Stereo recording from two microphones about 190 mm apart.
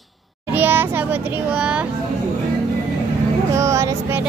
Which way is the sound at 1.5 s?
5° right (ahead or behind).